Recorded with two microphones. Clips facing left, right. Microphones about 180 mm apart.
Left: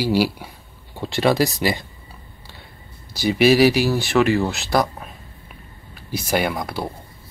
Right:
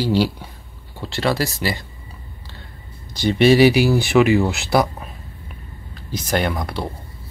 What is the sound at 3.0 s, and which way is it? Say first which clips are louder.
Speech: right 1 dB; 5° left (ahead or behind).